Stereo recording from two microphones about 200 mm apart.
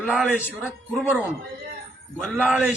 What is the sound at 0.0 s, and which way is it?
A man's voice, 10° left (ahead or behind).